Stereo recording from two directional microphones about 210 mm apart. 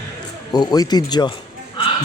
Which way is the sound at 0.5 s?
20° left (ahead or behind).